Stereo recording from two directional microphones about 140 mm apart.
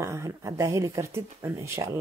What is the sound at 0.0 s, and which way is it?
Speech, 20° right (ahead or behind).